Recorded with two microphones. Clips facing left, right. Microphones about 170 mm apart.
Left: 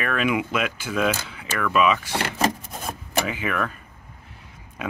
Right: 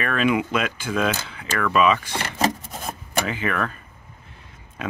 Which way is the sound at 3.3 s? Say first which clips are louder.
Right 1 dB; 10° left (ahead or behind).